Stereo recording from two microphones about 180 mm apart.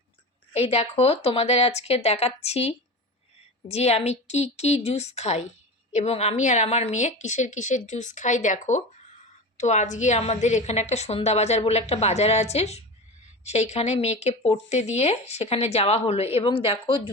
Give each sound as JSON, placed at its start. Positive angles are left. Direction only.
{"t": 0.5, "sound": "speech", "side_deg": 35}